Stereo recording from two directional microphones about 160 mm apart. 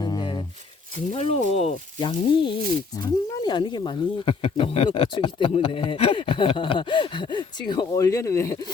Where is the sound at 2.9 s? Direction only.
25° left (ahead or behind).